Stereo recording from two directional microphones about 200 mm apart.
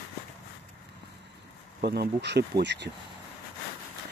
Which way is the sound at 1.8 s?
50° right (ahead or behind).